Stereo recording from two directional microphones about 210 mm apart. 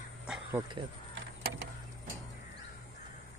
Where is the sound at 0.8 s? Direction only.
25° right (ahead or behind).